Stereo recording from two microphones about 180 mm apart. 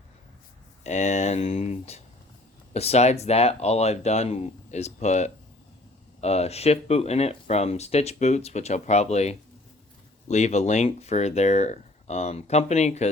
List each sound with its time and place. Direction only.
0.9 s speech: 40° left (ahead or behind)